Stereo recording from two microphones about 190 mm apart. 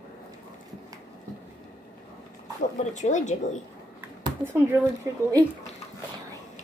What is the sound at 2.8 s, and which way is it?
Speech, 40° left (ahead or behind).